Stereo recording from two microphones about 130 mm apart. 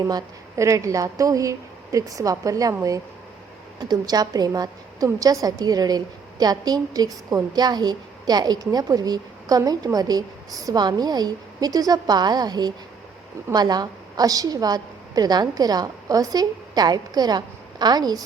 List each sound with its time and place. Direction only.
0.1 s a woman's voice: 25° right (ahead or behind)